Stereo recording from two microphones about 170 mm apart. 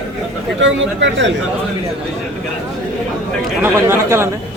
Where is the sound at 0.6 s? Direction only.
90° right.